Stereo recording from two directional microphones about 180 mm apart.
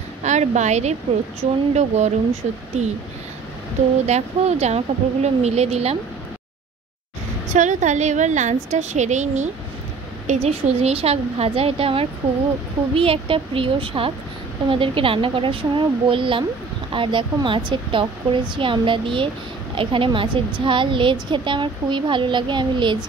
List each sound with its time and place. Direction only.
0.2 s speech: 40° right (ahead or behind)
4.0 s speech: 35° right (ahead or behind)
7.5 s a woman's voice: 40° right (ahead or behind); by 22.9 s 25° right (ahead or behind)